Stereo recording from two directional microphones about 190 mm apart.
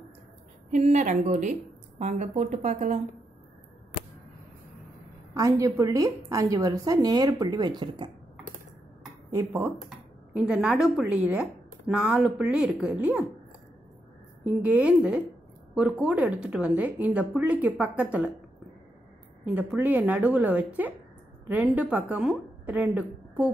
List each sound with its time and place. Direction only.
0.7 s speech: 40° right (ahead or behind)
5.3 s a woman's voice: 15° right (ahead or behind)
9.3 s a woman's voice: 15° right (ahead or behind)
9.8 s speech: 5° right (ahead or behind)
14.5 s a woman's voice: 5° right (ahead or behind)
19.4 s a woman's voice: 10° right (ahead or behind)